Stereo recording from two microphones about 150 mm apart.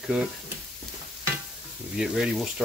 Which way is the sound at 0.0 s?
5° right (ahead or behind).